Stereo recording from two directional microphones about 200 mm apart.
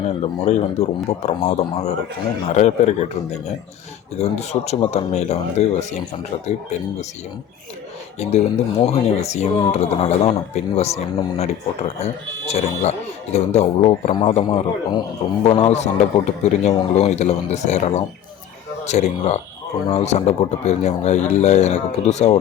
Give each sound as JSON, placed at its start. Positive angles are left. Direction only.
{"t": 0.0, "sound": "speech", "side_deg": 30}
{"t": 4.2, "sound": "speech", "side_deg": 35}
{"t": 8.2, "sound": "a man's voice", "side_deg": 35}